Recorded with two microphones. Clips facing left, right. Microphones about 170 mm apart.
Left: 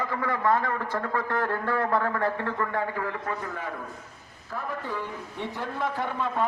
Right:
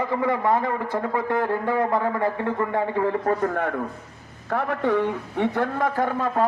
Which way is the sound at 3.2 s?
50° right (ahead or behind).